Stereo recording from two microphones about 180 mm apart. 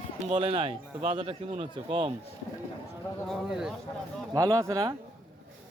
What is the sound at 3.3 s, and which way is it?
Speech, centre (ahead or behind).